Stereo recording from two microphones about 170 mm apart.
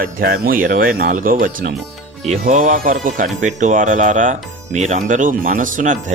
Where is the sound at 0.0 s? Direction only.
60° right (ahead or behind).